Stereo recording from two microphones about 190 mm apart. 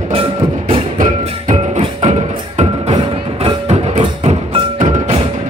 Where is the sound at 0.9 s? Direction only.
45° right (ahead or behind).